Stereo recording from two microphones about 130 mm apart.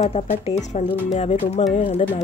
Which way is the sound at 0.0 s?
60° left (ahead or behind).